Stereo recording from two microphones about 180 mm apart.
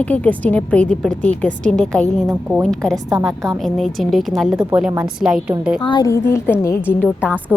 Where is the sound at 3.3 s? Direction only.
15° right (ahead or behind).